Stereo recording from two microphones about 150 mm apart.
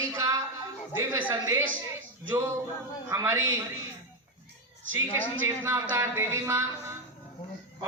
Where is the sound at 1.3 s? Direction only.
20° right (ahead or behind).